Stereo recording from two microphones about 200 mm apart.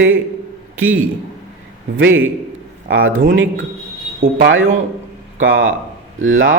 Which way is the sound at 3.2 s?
70° right (ahead or behind).